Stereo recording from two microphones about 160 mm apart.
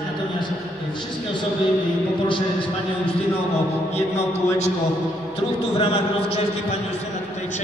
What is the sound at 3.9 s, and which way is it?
Music, 40° left (ahead or behind).